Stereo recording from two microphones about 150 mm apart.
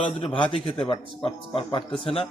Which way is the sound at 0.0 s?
35° left (ahead or behind).